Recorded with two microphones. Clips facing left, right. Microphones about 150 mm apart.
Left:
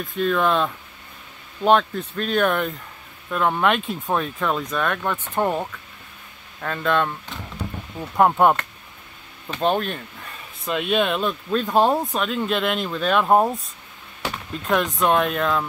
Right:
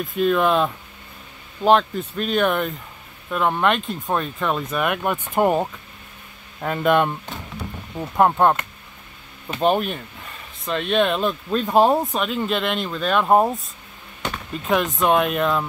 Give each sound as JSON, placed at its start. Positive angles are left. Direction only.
{"t": 0.0, "sound": "speech", "side_deg": -5}
{"t": 8.2, "sound": "speech", "side_deg": 5}
{"t": 9.5, "sound": "speech", "side_deg": -5}
{"t": 10.6, "sound": "speech", "side_deg": 5}